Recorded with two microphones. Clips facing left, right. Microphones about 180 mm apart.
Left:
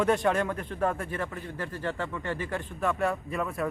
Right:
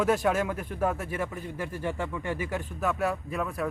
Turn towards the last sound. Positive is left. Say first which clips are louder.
# even
turn(degrees=0)  # may be behind; listen again after turning